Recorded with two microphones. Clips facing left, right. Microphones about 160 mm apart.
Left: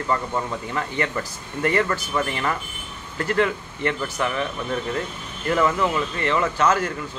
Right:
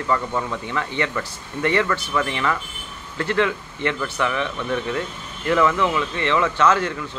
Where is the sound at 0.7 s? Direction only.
40° left (ahead or behind).